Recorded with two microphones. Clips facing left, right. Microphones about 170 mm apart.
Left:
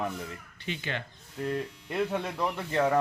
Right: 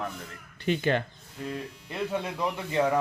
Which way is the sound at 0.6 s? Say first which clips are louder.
Right 10 dB; 45° right (ahead or behind).